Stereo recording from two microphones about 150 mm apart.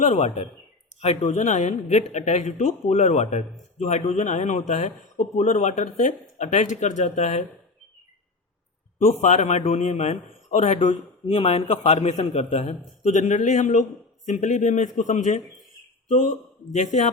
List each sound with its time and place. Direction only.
0.0 s a man's voice: 45° left (ahead or behind)
9.0 s a man's voice: 50° left (ahead or behind)
11.3 s a man's voice: 40° left (ahead or behind)